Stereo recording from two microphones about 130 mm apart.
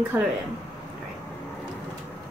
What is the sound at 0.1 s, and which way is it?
Speech, 20° right (ahead or behind).